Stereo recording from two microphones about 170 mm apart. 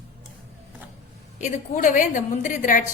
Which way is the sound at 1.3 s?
45° left (ahead or behind).